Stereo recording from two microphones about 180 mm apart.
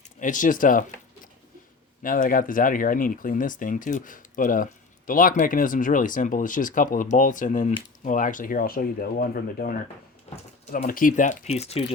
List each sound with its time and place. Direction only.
0.2 s speech: 45° left (ahead or behind)
10.2 s a sound: 35° left (ahead or behind)
10.8 s speech: 50° left (ahead or behind)